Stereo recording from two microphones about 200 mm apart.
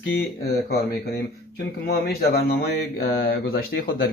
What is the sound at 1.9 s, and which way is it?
Speech, 50° left (ahead or behind).